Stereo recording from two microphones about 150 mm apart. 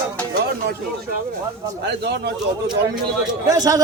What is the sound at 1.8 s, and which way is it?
Speech, 90° right.